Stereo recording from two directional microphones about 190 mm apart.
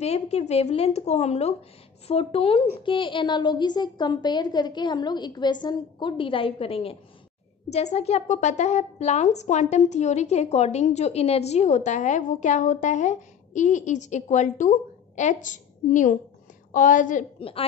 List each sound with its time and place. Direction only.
0.0 s a woman's voice: 35° left (ahead or behind)
17.4 s a woman's voice: 30° left (ahead or behind)